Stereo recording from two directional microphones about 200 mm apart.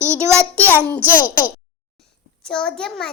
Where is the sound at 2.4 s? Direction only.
5° left (ahead or behind).